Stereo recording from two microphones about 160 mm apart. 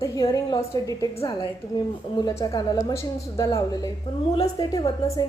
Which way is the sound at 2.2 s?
25° left (ahead or behind).